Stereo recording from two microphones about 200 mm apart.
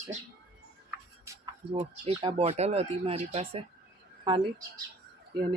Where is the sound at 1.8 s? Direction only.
30° right (ahead or behind).